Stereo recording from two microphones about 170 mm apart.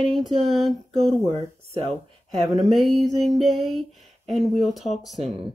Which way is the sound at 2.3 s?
Centre (ahead or behind).